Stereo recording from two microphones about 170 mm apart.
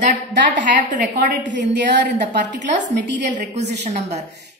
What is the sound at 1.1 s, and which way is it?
A woman's voice, 80° right.